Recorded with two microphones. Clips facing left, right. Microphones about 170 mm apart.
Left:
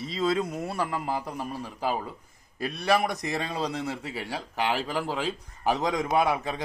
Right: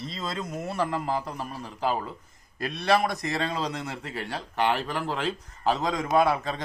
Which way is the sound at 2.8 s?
15° left (ahead or behind).